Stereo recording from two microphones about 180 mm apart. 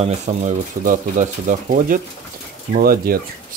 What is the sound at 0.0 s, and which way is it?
Speech, 40° right (ahead or behind).